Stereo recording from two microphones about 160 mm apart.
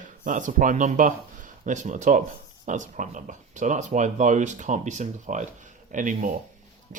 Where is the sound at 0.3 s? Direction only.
55° right (ahead or behind).